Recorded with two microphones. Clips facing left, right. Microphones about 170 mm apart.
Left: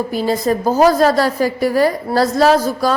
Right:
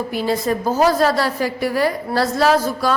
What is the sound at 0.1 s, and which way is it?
A woman's voice, 40° left (ahead or behind).